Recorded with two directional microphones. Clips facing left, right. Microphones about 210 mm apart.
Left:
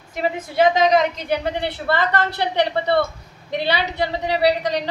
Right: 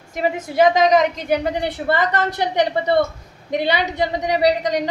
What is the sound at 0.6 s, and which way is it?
Speech, 40° right (ahead or behind).